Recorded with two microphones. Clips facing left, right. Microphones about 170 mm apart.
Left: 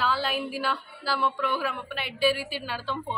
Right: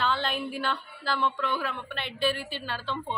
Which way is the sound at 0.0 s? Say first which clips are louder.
Left 1 dB; 5° left (ahead or behind).